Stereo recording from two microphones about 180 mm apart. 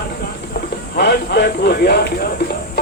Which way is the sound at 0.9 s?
65° left (ahead or behind).